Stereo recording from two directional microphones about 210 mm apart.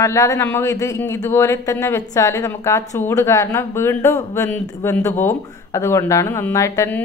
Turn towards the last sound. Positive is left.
turn(degrees=10)  # may be behind; listen again after turning